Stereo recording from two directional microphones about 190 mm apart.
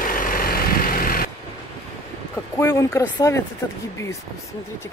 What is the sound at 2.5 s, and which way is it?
Speech, 15° left (ahead or behind).